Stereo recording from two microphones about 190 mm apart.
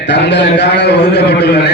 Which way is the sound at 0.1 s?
65° left (ahead or behind).